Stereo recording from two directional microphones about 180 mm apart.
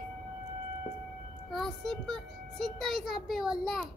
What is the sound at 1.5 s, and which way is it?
A child's voice, centre (ahead or behind).